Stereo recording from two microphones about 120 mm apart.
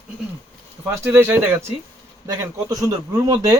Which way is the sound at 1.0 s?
15° right (ahead or behind).